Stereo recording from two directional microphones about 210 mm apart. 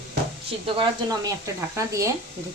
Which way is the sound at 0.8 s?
15° right (ahead or behind).